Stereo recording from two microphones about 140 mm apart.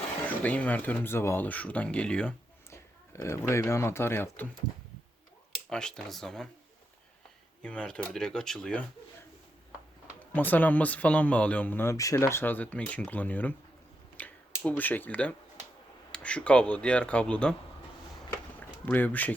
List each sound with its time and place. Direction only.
0.3 s speech: 10° left (ahead or behind)
2.6 s speech: 20° left (ahead or behind)
5.5 s speech: 5° left (ahead or behind)
7.6 s speech: 5° left (ahead or behind)
10.2 s speech: 10° left (ahead or behind)
18.9 s speech: 10° left (ahead or behind)